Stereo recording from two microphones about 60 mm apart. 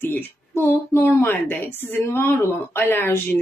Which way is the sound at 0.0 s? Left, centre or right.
Left.